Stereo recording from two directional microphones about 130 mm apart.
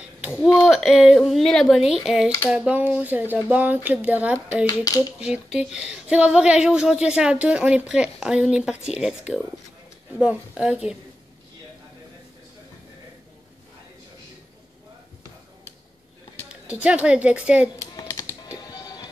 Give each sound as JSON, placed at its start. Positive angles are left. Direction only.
{"t": 0.7, "sound": "a woman's voice", "side_deg": -5}
{"t": 4.8, "sound": "speech", "side_deg": 30}
{"t": 5.2, "sound": "a woman's voice", "side_deg": -5}
{"t": 16.4, "sound": "a woman's voice", "side_deg": -10}
{"t": 17.7, "sound": "a sound", "side_deg": 25}
{"t": 18.7, "sound": "music", "side_deg": 30}